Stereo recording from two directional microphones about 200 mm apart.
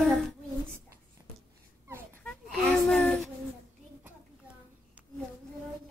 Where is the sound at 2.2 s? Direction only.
5° left (ahead or behind).